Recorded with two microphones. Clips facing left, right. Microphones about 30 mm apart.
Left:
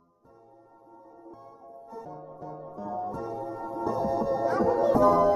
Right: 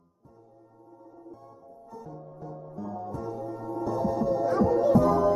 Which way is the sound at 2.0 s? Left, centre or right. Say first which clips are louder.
Left 1 dB; centre.